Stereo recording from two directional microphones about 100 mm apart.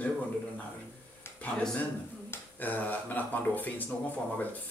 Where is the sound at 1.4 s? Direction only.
5° left (ahead or behind).